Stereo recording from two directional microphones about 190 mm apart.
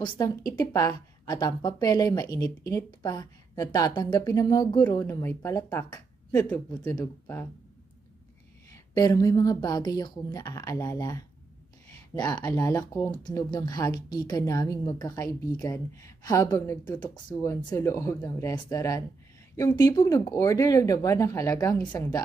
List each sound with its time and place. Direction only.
0.0 s a woman's voice: 20° left (ahead or behind)
8.9 s a woman's voice: 20° left (ahead or behind)